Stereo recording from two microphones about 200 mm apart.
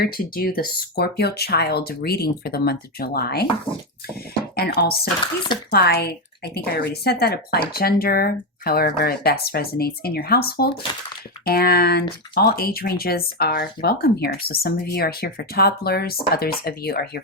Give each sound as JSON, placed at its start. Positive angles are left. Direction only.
{"t": 0.0, "sound": "speech", "side_deg": 50}
{"t": 4.5, "sound": "speech", "side_deg": 50}
{"t": 10.9, "sound": "speech", "side_deg": 20}
{"t": 11.4, "sound": "speech", "side_deg": 50}